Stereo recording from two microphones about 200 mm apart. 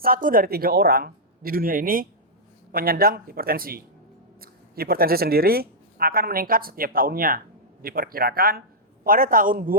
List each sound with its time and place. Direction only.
0.0 s speech: 45° right (ahead or behind)